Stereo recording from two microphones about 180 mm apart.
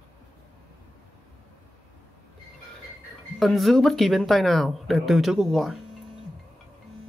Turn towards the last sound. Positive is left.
turn(degrees=0)  # may be behind; listen again after turning